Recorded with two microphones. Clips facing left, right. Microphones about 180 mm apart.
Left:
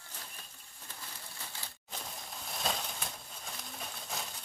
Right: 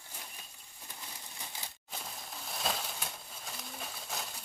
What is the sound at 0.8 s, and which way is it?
Crumpling, 15° right (ahead or behind).